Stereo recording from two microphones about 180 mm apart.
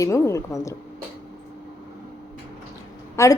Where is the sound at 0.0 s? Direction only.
15° left (ahead or behind).